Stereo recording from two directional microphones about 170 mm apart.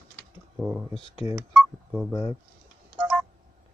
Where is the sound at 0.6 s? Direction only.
15° right (ahead or behind).